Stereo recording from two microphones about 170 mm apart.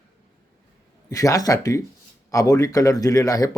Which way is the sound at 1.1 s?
20° left (ahead or behind).